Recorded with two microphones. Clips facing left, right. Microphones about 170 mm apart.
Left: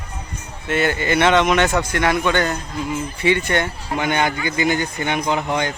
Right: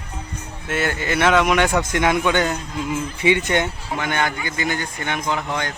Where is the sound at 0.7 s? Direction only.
Centre (ahead or behind).